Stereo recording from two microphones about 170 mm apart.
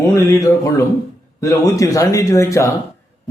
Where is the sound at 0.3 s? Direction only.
20° left (ahead or behind).